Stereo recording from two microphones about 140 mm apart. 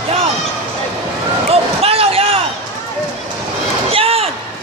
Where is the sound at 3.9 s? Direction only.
45° right (ahead or behind).